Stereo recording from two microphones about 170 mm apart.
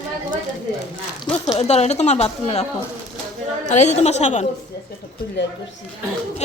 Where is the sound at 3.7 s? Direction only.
40° left (ahead or behind).